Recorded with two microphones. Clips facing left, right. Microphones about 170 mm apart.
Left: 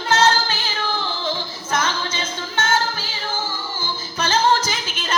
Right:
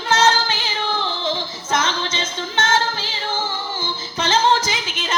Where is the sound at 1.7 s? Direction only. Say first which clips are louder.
Right 1 dB; 25° right (ahead or behind).